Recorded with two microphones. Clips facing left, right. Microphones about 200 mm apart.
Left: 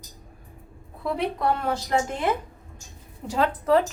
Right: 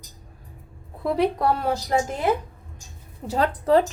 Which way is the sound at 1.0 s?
40° right (ahead or behind).